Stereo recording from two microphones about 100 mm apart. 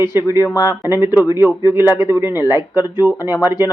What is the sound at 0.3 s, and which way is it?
Speech, 40° left (ahead or behind).